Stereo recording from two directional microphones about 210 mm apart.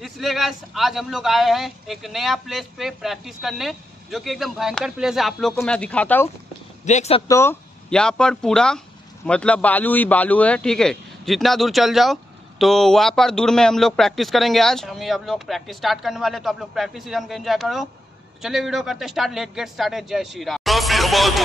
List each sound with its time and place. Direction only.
0.0 s speech: centre (ahead or behind)
6.8 s speech: 35° left (ahead or behind)
7.2 s speech: 10° left (ahead or behind)